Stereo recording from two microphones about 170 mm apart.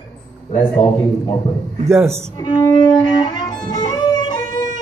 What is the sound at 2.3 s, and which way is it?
Music, 25° left (ahead or behind).